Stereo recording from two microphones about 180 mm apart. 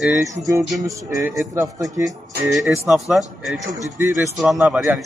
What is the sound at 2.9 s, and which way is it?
A man's voice, centre (ahead or behind).